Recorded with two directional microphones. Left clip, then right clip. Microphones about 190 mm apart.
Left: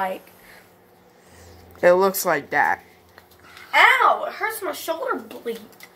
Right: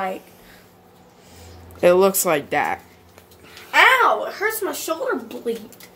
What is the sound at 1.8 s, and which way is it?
Speech, 10° right (ahead or behind).